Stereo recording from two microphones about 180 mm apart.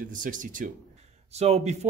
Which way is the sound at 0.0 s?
50° right (ahead or behind).